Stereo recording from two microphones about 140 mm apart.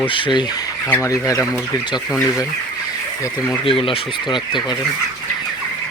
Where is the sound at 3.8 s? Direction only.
40° left (ahead or behind).